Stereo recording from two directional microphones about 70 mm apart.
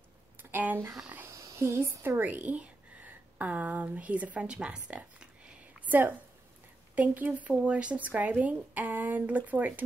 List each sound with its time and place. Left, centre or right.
0.4 s speech: right
1.2 s a sound: right
2.0 s a woman's voice: right